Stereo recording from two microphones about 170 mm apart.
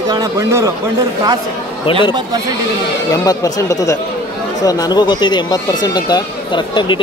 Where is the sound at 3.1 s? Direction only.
20° left (ahead or behind).